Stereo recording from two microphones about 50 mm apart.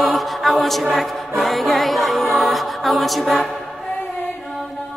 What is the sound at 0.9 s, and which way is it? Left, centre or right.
Choir, centre.